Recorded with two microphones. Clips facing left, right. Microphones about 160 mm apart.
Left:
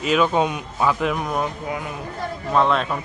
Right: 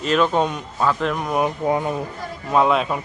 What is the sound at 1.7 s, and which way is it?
Speech, 30° right (ahead or behind).